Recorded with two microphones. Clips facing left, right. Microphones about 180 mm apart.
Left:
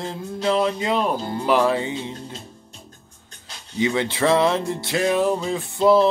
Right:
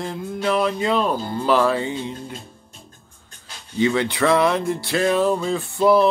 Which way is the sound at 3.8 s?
20° left (ahead or behind).